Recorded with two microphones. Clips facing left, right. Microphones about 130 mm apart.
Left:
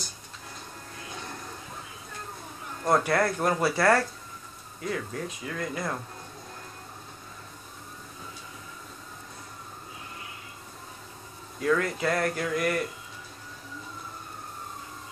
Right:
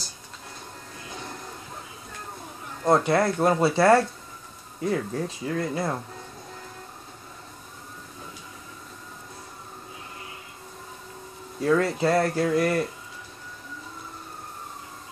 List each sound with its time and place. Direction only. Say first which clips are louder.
2.9 s speech: right 3 dB; 20° right (ahead or behind)
11.6 s speech: right 4 dB; 30° right (ahead or behind)